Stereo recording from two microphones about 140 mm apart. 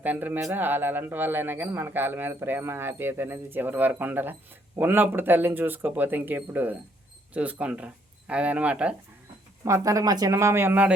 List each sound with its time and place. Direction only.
0.0 s speech: 10° right (ahead or behind)
9.6 s speech: 20° right (ahead or behind)